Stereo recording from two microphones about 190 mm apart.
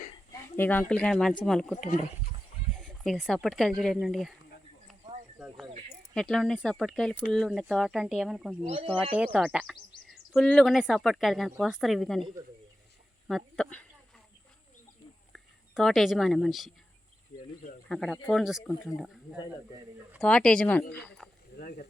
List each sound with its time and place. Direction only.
0.5 s speech: 10° left (ahead or behind)
6.1 s speech: 5° left (ahead or behind)
8.6 s speech: 30° right (ahead or behind)
9.1 s speech: 5° right (ahead or behind)
15.3 s speech: centre (ahead or behind)
17.8 s speech: centre (ahead or behind)
21.5 s snake: 60° left (ahead or behind)